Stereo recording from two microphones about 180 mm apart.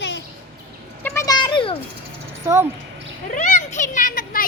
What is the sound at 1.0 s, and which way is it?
Children playing, 15° left (ahead or behind).